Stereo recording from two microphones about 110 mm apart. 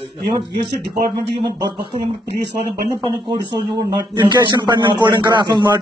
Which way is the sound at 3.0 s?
45° right (ahead or behind).